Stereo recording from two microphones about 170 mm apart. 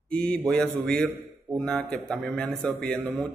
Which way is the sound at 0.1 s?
5° left (ahead or behind).